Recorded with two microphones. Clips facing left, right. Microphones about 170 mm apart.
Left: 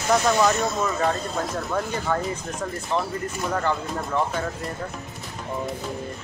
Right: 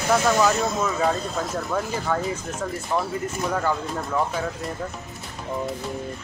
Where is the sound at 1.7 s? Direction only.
Centre (ahead or behind).